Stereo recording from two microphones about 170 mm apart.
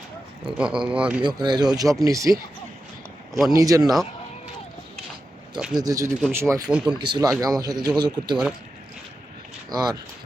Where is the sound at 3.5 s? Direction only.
20° right (ahead or behind).